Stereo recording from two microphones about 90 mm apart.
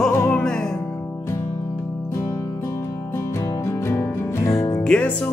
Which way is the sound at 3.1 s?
35° left (ahead or behind).